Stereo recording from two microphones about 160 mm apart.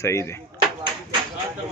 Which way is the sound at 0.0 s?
20° left (ahead or behind).